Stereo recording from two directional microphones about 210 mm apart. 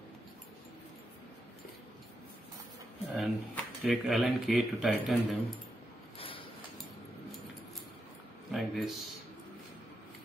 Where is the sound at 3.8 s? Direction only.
Centre (ahead or behind).